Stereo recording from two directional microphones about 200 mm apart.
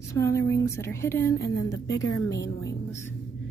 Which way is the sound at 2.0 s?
70° left (ahead or behind).